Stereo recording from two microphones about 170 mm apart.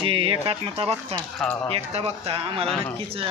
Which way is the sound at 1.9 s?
35° right (ahead or behind).